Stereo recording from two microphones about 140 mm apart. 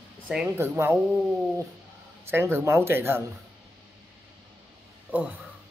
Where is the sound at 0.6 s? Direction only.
15° right (ahead or behind).